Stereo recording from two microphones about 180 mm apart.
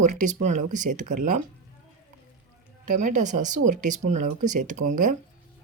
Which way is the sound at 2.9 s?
45° right (ahead or behind).